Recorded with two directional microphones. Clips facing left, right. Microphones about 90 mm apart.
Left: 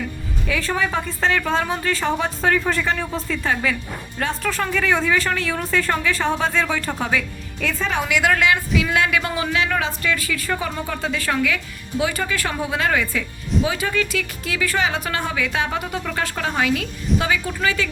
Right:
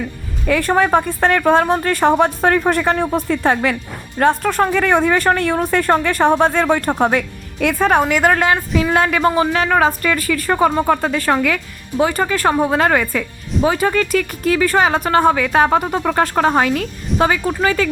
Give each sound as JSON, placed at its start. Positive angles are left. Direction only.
{"t": 0.4, "sound": "a woman's voice", "side_deg": -55}